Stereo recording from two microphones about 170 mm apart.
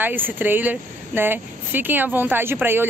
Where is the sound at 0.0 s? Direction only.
10° right (ahead or behind).